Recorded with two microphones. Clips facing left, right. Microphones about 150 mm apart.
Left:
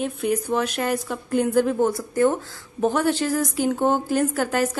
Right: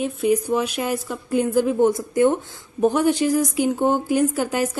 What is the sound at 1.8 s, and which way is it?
A woman's voice, 20° right (ahead or behind).